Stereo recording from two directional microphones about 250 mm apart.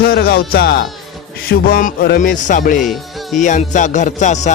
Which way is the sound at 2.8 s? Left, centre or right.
Centre.